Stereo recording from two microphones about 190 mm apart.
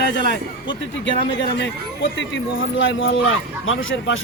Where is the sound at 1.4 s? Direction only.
65° left (ahead or behind).